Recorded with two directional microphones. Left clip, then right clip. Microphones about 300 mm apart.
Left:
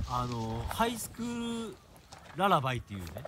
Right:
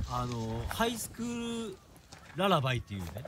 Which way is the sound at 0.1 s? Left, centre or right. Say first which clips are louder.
Left 2 dB; centre.